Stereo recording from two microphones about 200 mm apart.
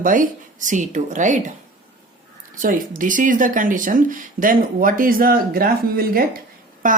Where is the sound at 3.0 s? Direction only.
40° right (ahead or behind).